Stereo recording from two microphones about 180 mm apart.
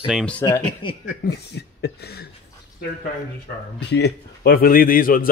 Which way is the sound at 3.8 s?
65° left (ahead or behind).